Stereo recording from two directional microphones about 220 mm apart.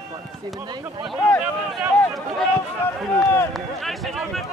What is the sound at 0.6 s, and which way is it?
Speech, 20° right (ahead or behind).